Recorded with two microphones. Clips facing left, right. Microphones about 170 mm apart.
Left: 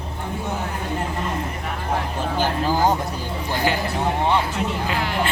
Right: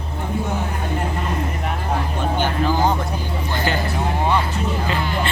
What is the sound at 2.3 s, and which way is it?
Speech, 35° left (ahead or behind).